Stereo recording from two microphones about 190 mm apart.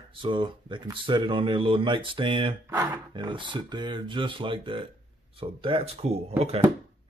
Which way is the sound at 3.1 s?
25° right (ahead or behind).